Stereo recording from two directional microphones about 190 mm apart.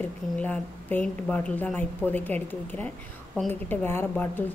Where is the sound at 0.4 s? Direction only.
10° left (ahead or behind).